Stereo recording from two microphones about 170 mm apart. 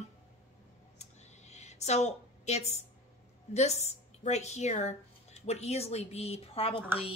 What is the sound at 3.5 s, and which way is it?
A woman's voice, 40° left (ahead or behind).